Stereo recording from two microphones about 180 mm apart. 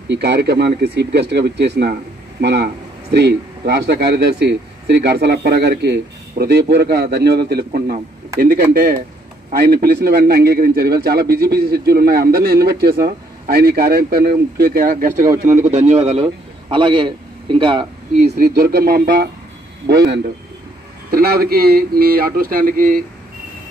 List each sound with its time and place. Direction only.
0.1 s a man's voice: 65° right (ahead or behind); by 15.2 s 45° right (ahead or behind)
15.6 s a man's voice: 35° right (ahead or behind)
18.3 s a man's voice: 60° right (ahead or behind)
19.9 s a man's voice: 65° right (ahead or behind); by 23.0 s 50° right (ahead or behind)